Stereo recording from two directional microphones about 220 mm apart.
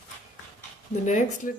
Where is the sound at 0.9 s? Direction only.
35° left (ahead or behind).